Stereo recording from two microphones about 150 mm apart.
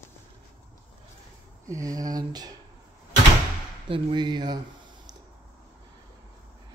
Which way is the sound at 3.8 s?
35° right (ahead or behind).